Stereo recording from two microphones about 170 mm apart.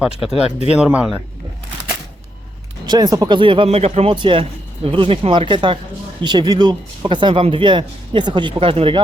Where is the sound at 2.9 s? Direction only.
25° right (ahead or behind).